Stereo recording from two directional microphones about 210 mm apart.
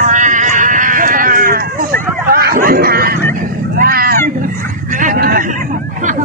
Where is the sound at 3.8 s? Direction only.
45° right (ahead or behind).